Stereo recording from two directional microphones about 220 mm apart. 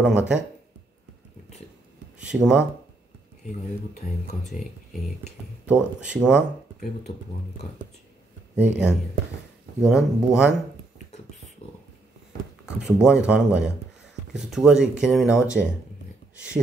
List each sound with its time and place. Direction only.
0.0 s speech: 5° right (ahead or behind)
2.1 s speech: 5° right (ahead or behind)
5.0 s speech: centre (ahead or behind)
7.6 s speech: 35° left (ahead or behind)
8.5 s speech: 5° right (ahead or behind)
12.6 s speech: 5° right (ahead or behind)